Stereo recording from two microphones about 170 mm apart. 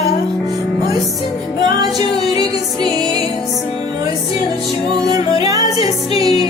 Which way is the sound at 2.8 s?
30° left (ahead or behind).